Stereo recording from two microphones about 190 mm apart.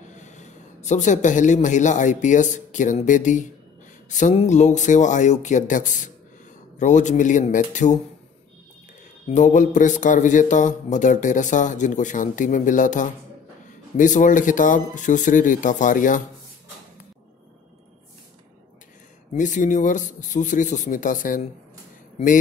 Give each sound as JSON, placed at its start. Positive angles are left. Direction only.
{"t": 0.2, "sound": "speech", "side_deg": 40}
{"t": 9.3, "sound": "speech", "side_deg": 40}
{"t": 19.3, "sound": "speech", "side_deg": 40}